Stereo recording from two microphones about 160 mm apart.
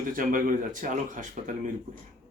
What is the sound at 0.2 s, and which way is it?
Speech, 55° right (ahead or behind).